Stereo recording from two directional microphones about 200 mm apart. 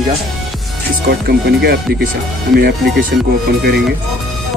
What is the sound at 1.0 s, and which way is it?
Speech, 55° right (ahead or behind).